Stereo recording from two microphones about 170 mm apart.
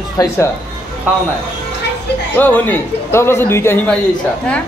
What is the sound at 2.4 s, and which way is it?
Speech, 10° left (ahead or behind).